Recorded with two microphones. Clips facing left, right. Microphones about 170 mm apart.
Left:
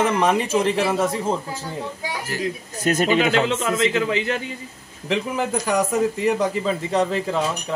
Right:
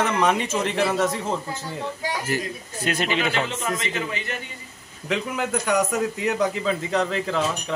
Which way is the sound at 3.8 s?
90° left.